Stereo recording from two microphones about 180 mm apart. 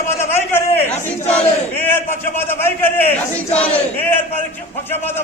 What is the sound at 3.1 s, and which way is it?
Speech, 35° left (ahead or behind).